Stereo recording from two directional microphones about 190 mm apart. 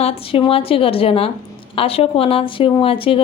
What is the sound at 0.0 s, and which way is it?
Speech, 30° left (ahead or behind).